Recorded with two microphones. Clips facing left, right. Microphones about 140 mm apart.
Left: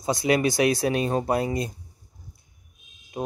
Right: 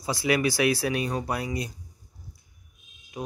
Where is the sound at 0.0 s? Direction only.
25° left (ahead or behind).